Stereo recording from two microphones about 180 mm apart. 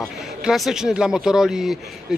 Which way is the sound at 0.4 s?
Centre (ahead or behind).